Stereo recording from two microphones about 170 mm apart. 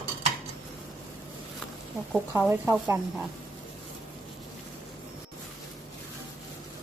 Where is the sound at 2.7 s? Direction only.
10° right (ahead or behind).